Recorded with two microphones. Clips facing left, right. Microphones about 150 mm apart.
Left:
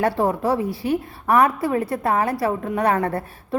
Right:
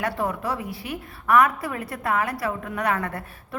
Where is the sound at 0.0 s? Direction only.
30° left (ahead or behind).